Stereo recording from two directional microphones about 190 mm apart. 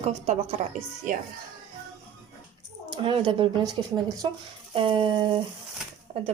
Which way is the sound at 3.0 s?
25° right (ahead or behind).